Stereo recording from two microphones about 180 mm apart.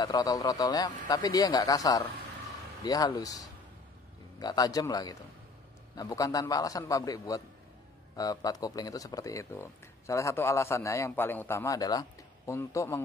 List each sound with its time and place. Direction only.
0.0 s a man's voice: 20° left (ahead or behind)